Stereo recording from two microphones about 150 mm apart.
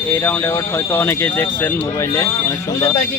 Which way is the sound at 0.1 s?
15° left (ahead or behind).